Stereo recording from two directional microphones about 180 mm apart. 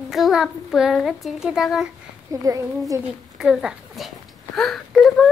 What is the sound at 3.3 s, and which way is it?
A woman's voice, 5° right (ahead or behind).